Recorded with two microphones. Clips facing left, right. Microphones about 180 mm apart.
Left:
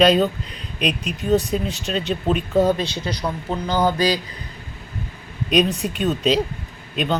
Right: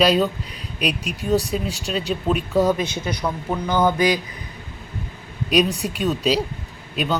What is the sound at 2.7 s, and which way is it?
Speech, 20° right (ahead or behind).